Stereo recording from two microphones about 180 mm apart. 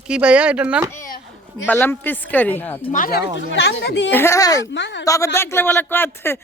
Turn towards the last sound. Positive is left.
turn(degrees=10)  # may be behind; listen again after turning